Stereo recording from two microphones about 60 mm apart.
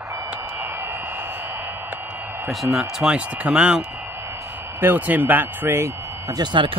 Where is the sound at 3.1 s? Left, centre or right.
Right.